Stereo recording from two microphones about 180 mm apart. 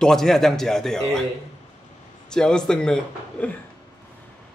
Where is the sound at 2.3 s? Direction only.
5° left (ahead or behind).